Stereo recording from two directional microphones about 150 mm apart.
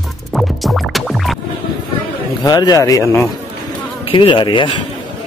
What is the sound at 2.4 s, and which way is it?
Speech, 25° left (ahead or behind).